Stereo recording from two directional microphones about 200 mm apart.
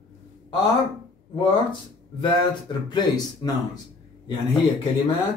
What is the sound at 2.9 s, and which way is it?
Speech, 20° left (ahead or behind).